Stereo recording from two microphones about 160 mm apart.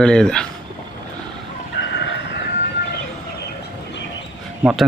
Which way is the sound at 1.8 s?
90° left.